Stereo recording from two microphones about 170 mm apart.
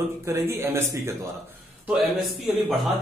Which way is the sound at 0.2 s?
15° right (ahead or behind).